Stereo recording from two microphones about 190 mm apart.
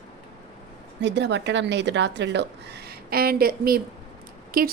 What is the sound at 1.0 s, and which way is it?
A woman's voice, 65° right (ahead or behind).